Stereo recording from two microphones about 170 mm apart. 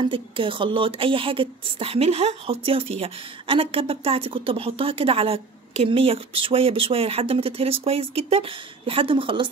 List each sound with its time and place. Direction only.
0.1 s a woman's voice: 30° right (ahead or behind)